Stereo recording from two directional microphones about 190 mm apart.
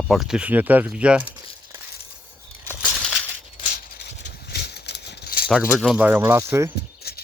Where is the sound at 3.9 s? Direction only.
60° left (ahead or behind).